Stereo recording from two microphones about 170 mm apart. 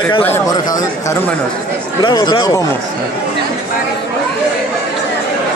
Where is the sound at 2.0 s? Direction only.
25° left (ahead or behind).